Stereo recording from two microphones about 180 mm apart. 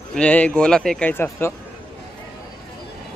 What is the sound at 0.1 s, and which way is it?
Speech, 5° left (ahead or behind).